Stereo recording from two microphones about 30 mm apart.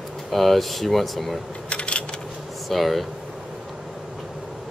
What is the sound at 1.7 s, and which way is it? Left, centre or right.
Coin, left.